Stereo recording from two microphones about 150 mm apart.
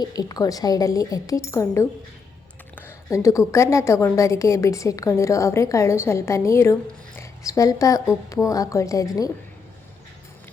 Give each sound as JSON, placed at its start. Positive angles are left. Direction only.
{"t": 0.0, "sound": "a woman's voice", "side_deg": 25}